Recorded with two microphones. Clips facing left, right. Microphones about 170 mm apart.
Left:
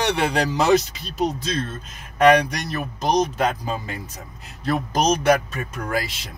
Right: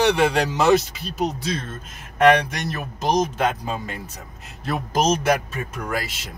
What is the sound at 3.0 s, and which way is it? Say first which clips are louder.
Speech: even; centre (ahead or behind).